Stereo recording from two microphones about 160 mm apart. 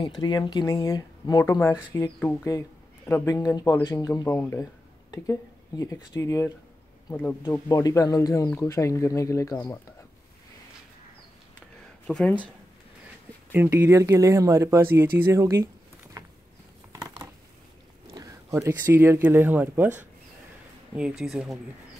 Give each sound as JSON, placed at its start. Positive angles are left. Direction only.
{"t": 0.0, "sound": "speech", "side_deg": 30}
{"t": 7.5, "sound": "speech", "side_deg": 20}
{"t": 12.1, "sound": "speech", "side_deg": 5}
{"t": 13.5, "sound": "speech", "side_deg": -15}
{"t": 15.1, "sound": "a sound", "side_deg": -15}
{"t": 18.1, "sound": "speech", "side_deg": -20}
{"t": 21.2, "sound": "speech", "side_deg": 0}